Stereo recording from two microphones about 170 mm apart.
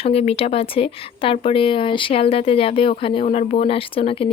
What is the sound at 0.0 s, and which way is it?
Speech, 35° left (ahead or behind).